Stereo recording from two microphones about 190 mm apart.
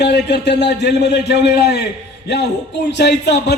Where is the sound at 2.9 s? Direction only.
65° left (ahead or behind).